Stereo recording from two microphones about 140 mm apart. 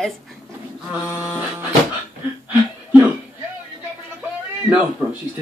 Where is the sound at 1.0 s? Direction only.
20° left (ahead or behind).